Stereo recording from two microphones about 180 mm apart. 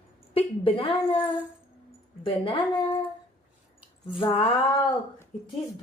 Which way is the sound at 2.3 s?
30° left (ahead or behind).